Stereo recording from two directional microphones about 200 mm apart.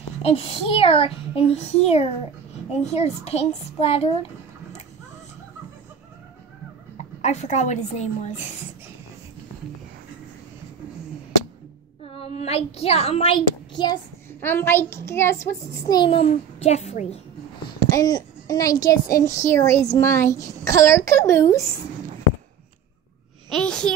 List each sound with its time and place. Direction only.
0.2 s a child's voice: 30° left (ahead or behind)
7.2 s a child's voice: 35° left (ahead or behind)
12.2 s a child's voice: 30° left (ahead or behind)
14.4 s a child's voice: 10° left (ahead or behind); by 17.2 s 35° left (ahead or behind)
17.6 s a woman's voice: 20° left (ahead or behind)
23.5 s a woman's voice: 5° left (ahead or behind)